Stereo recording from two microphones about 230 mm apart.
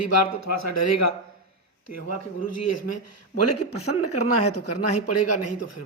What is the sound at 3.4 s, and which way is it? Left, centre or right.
A man's voice, left.